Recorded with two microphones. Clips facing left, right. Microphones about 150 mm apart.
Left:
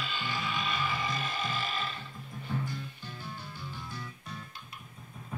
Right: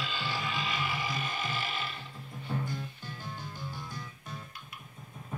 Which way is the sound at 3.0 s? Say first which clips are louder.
Right 1 dB; 15° right (ahead or behind).